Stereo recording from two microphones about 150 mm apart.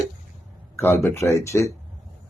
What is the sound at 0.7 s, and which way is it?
Speech, 15° left (ahead or behind).